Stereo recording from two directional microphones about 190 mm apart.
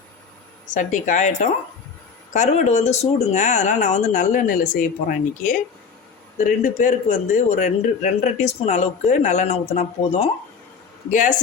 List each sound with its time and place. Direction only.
0.7 s speech: 45° left (ahead or behind)
6.6 s speech: 40° left (ahead or behind)